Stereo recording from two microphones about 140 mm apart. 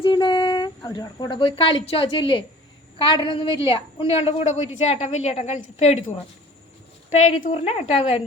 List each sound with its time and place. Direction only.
0.0 s a woman's voice: 35° left (ahead or behind); by 6.0 s 50° left (ahead or behind)
7.1 s a woman's voice: 55° left (ahead or behind)